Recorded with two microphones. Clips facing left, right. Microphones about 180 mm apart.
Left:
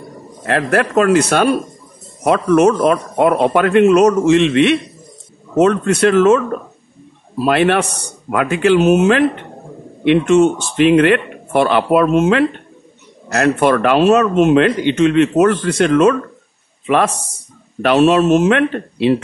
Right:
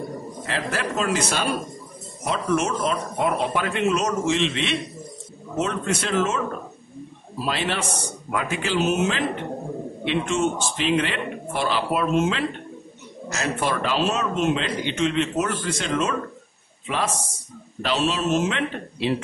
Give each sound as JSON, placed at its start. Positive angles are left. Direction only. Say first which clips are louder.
{"t": 0.5, "sound": "speech", "louder": "left 11 dB", "side_deg": 60}
{"t": 7.4, "sound": "speech", "louder": "left 12 dB", "side_deg": 60}